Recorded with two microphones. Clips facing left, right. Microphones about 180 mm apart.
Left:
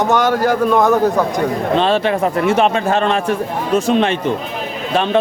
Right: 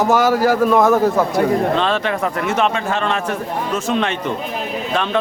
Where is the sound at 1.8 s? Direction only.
30° left (ahead or behind).